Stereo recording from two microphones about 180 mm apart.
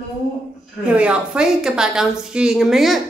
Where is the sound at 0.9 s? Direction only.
5° right (ahead or behind).